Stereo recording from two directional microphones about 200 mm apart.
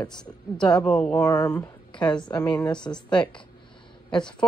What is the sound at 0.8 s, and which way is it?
Speech, 5° left (ahead or behind).